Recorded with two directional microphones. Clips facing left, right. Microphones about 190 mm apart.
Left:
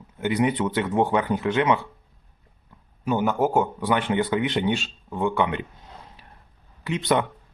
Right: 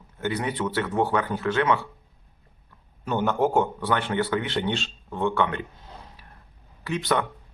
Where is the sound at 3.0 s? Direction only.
5° left (ahead or behind).